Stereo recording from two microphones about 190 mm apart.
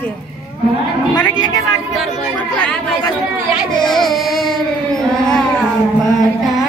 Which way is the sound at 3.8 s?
Centre (ahead or behind).